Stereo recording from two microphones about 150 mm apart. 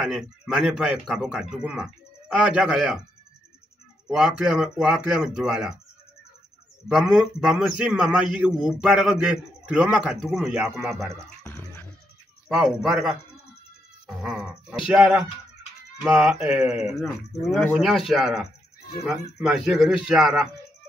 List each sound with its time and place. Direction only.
0.0 s a man's voice: centre (ahead or behind)
4.1 s a man's voice: 5° right (ahead or behind)
6.9 s a man's voice: 5° right (ahead or behind)
10.8 s speech: 15° right (ahead or behind)
12.4 s a man's voice: 5° right (ahead or behind)